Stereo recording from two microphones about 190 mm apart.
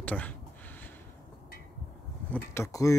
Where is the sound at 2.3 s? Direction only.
15° left (ahead or behind).